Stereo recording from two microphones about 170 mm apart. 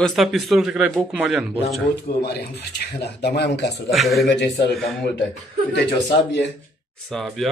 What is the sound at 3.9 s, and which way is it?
Speech, centre (ahead or behind).